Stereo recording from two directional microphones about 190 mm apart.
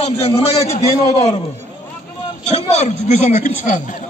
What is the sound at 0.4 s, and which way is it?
Speech, 35° left (ahead or behind).